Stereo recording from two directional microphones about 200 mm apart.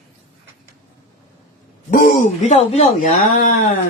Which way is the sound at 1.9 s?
40° left (ahead or behind).